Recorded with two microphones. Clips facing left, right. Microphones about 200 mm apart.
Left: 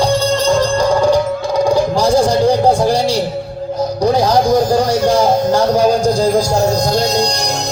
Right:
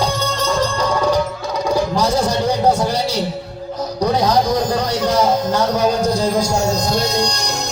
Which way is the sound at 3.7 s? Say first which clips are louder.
Left 4 dB; 30° left (ahead or behind).